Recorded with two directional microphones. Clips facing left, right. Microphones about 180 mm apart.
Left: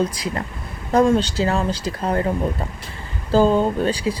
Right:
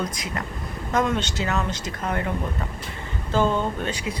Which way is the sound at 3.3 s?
35° left (ahead or behind).